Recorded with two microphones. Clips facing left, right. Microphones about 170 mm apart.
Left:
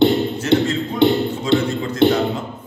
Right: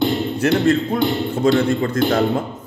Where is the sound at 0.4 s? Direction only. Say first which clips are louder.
Left 1 dB; 60° right (ahead or behind).